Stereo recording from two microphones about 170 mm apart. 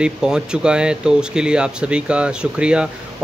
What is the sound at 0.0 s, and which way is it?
Speech, 5° right (ahead or behind).